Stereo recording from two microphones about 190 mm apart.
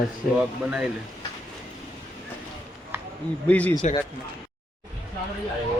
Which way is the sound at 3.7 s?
30° left (ahead or behind).